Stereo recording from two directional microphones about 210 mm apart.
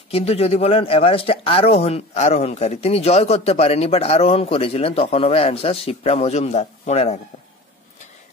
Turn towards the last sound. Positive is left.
turn(degrees=30)  # may be behind; listen again after turning